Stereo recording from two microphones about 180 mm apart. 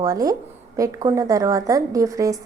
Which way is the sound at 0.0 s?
20° right (ahead or behind).